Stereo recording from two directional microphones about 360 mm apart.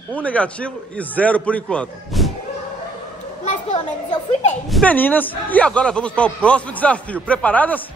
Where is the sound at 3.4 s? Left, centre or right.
Centre.